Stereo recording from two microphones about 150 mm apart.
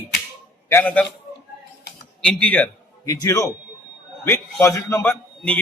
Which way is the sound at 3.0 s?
25° left (ahead or behind).